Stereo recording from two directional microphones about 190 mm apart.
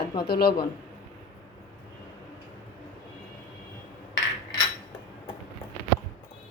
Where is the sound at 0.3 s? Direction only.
55° left (ahead or behind).